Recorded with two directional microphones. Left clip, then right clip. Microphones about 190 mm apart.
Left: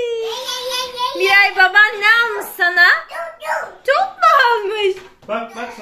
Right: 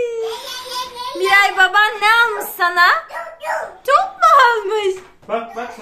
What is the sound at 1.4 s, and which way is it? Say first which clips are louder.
A woman's voice: left 2 dB; 25° right (ahead or behind).